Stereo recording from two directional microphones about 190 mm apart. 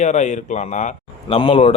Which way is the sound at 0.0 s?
40° left (ahead or behind).